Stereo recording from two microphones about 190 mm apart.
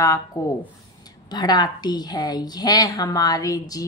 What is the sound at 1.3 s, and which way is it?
A woman's voice, 20° left (ahead or behind).